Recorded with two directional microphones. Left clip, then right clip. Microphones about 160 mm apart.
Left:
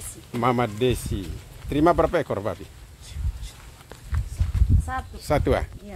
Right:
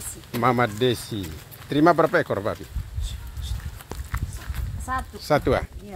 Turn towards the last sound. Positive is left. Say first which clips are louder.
# right 2 dB
turn(degrees=15)  # may be behind; listen again after turning